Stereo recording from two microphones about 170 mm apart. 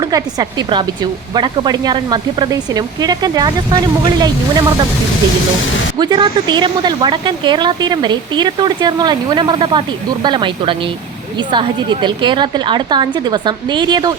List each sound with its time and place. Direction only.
0.0 s speech: 20° right (ahead or behind)
6.0 s speech: 25° right (ahead or behind)